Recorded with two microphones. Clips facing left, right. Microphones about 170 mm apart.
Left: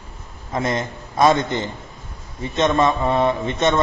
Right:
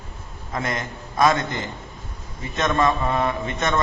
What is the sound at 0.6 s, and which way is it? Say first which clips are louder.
Speech: left 5 dB; 30° left (ahead or behind).